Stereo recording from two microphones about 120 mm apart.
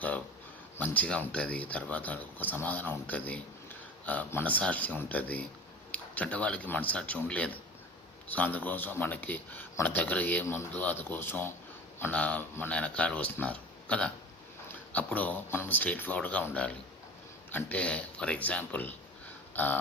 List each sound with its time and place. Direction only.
0.8 s speech: 10° left (ahead or behind)
17.5 s speech: 10° left (ahead or behind)
19.5 s a sound: 15° left (ahead or behind)